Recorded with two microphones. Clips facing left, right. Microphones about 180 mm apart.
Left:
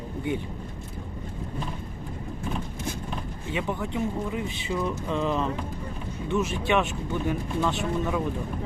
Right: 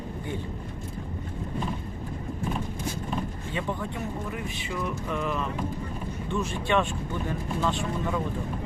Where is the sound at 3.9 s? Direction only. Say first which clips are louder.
Left 5 dB; 20° left (ahead or behind).